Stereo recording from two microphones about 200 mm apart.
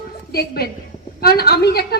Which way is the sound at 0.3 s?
50° left (ahead or behind).